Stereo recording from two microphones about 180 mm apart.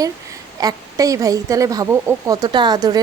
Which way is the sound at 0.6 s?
20° right (ahead or behind).